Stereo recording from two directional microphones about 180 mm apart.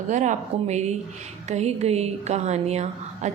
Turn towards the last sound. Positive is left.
turn(degrees=-40)  # may be behind; listen again after turning